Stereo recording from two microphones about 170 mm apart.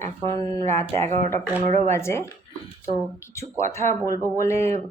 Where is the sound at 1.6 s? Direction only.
40° right (ahead or behind).